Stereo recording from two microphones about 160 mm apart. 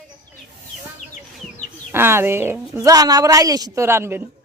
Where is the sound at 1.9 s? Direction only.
15° right (ahead or behind).